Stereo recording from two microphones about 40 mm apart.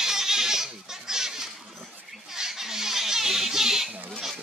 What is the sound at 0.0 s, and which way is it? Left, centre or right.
Goat, centre.